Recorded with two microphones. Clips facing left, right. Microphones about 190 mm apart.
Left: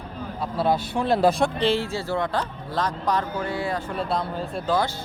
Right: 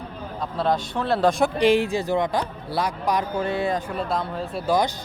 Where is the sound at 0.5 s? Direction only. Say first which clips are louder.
Left 1 dB; 5° left (ahead or behind).